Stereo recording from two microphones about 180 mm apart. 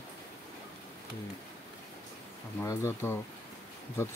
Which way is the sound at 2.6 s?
15° left (ahead or behind).